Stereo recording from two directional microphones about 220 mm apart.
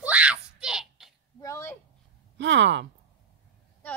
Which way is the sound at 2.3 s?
55° right (ahead or behind).